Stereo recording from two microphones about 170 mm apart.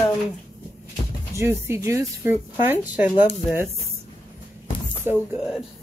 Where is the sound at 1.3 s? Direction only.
15° right (ahead or behind).